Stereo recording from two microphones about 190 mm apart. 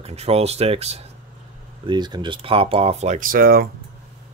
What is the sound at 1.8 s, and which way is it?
Speech, 25° right (ahead or behind).